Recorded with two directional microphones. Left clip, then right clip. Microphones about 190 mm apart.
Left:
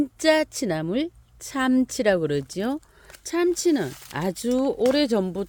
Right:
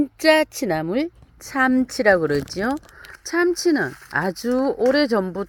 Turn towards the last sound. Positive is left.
turn(degrees=20)  # may be behind; listen again after turning